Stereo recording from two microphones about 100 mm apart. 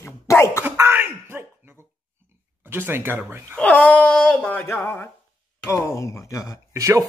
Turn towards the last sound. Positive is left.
turn(degrees=-30)  # may be behind; listen again after turning